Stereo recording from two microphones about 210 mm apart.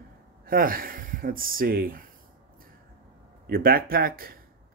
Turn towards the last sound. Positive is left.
turn(degrees=-45)  # may be behind; listen again after turning